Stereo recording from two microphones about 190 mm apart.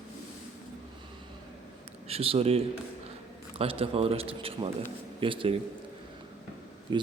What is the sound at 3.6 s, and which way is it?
A man's voice, 30° right (ahead or behind).